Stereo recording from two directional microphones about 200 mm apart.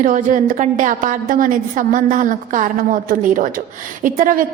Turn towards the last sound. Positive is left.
turn(degrees=-45)  # may be behind; listen again after turning